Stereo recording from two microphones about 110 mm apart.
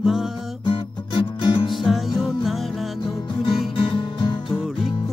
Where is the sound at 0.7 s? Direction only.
45° left (ahead or behind).